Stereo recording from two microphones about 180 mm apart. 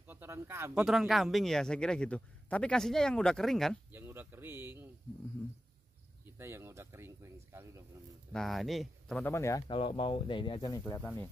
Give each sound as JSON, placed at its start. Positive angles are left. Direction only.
{"t": 0.0, "sound": "speech", "side_deg": -10}
{"t": 0.8, "sound": "a man's voice", "side_deg": 0}
{"t": 3.9, "sound": "a man's voice", "side_deg": -10}
{"t": 6.2, "sound": "speech", "side_deg": -15}
{"t": 8.3, "sound": "speech", "side_deg": 0}
{"t": 9.2, "sound": "speech", "side_deg": 15}